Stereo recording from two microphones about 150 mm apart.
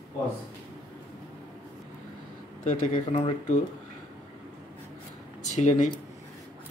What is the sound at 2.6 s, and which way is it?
Speech, 55° left (ahead or behind).